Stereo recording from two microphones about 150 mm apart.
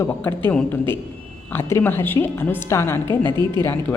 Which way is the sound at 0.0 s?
15° left (ahead or behind).